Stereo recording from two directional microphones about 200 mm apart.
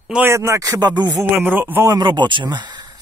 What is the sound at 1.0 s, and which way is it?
Speech, 10° right (ahead or behind).